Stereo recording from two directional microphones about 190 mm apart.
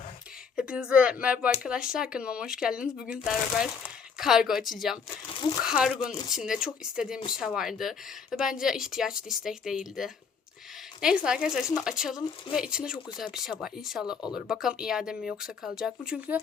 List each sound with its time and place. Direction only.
0.5 s speech: 5° right (ahead or behind)
5.3 s crumpling: 25° left (ahead or behind)
5.6 s speech: 5° right (ahead or behind)